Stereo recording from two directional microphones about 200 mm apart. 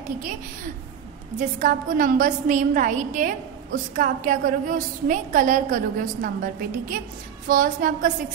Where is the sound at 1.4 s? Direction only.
40° right (ahead or behind).